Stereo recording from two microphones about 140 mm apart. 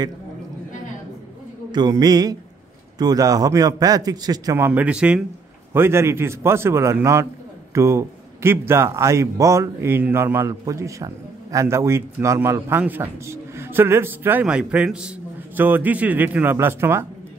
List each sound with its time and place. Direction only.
1.7 s a man's voice: 30° right (ahead or behind)
4.6 s a man's voice: 15° right (ahead or behind)